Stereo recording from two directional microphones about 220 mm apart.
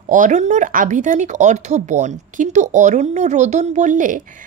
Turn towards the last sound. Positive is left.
turn(degrees=-35)  # may be behind; listen again after turning